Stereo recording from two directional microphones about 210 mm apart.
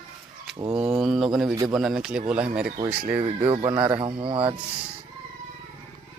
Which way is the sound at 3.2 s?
25° right (ahead or behind).